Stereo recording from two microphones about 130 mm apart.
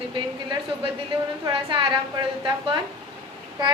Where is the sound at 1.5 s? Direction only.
40° right (ahead or behind).